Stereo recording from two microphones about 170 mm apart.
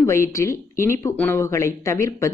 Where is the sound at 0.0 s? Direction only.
15° left (ahead or behind).